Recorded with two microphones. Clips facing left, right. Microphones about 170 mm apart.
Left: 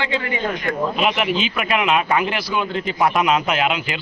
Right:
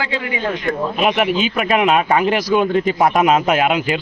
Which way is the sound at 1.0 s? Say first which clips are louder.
Right 6 dB; 45° right (ahead or behind).